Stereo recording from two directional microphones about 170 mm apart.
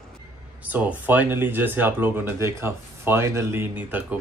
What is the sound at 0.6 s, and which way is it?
Speech, 10° right (ahead or behind).